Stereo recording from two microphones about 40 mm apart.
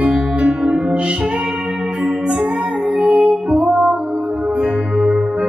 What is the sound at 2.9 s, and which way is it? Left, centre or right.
Music, right.